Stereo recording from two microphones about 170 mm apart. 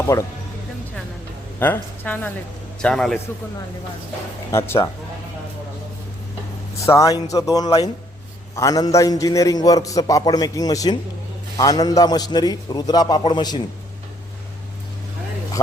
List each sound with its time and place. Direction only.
0.1 s a man's voice: 20° left (ahead or behind)
1.5 s a woman's voice: 10° left (ahead or behind)
4.5 s speech: 15° left (ahead or behind)
6.8 s a man's voice: 20° left (ahead or behind)